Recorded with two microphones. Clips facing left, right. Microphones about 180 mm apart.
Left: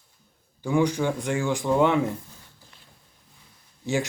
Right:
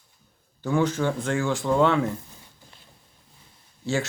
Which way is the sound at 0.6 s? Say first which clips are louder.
Left 1 dB; 15° left (ahead or behind).